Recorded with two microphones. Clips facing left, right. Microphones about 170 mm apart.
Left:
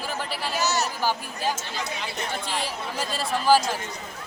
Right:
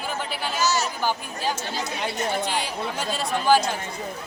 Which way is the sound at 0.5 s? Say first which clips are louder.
Right 1 dB; 65° left (ahead or behind).